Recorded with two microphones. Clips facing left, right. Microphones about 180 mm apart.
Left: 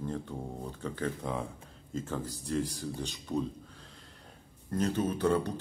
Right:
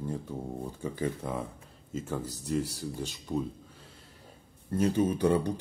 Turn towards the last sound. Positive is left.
turn(degrees=-10)  # may be behind; listen again after turning